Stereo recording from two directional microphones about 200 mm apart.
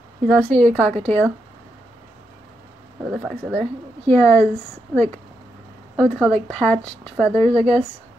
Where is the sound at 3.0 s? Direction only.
Centre (ahead or behind).